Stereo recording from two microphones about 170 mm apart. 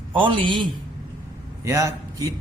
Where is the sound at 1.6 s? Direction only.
15° right (ahead or behind).